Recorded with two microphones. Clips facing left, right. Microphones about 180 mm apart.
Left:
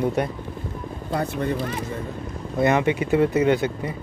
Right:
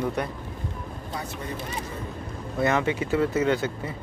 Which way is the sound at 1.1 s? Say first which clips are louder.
Left 11 dB; 60° left (ahead or behind).